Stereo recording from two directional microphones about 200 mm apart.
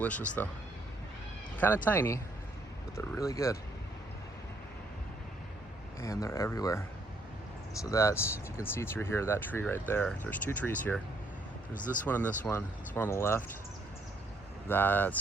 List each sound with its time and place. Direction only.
0.0 s speech: 5° left (ahead or behind)
1.5 s speech: 10° left (ahead or behind)
6.0 s speech: 15° left (ahead or behind)
12.0 s speech: 10° left (ahead or behind)
14.7 s speech: 10° left (ahead or behind)